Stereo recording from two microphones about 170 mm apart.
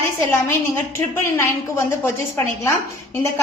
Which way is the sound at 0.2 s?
15° left (ahead or behind).